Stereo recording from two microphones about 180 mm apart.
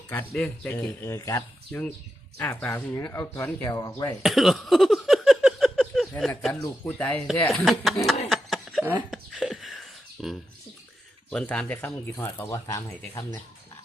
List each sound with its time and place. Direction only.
0.1 s speech: 10° left (ahead or behind)
4.2 s a sound: centre (ahead or behind)
6.5 s speech: 10° left (ahead or behind)
8.3 s a sound: centre (ahead or behind)
9.0 s beatboxing: centre (ahead or behind)
11.3 s speech: 5° left (ahead or behind)